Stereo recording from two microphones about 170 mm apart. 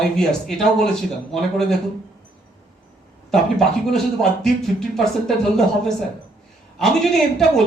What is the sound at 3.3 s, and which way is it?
Speech, 5° left (ahead or behind).